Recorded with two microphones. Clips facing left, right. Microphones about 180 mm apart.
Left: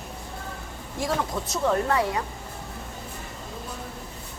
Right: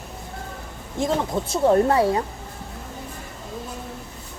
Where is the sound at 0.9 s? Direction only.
25° right (ahead or behind).